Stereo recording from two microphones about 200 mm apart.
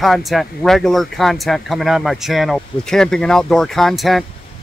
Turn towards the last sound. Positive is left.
turn(degrees=0)  # may be behind; listen again after turning